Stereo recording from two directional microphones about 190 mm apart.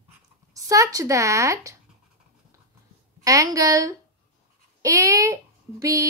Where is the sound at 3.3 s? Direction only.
20° right (ahead or behind).